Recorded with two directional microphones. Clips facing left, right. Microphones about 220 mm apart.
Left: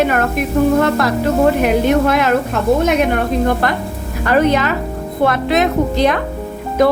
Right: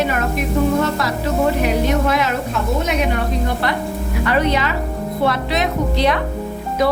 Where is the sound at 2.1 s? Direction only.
55° left (ahead or behind).